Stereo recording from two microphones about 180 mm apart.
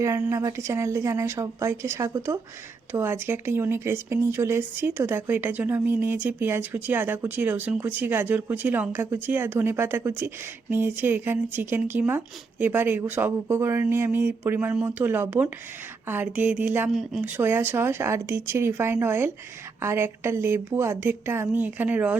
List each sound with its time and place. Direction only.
0.0 s speech: 15° right (ahead or behind)